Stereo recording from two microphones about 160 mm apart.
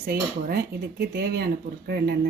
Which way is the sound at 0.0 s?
70° right (ahead or behind).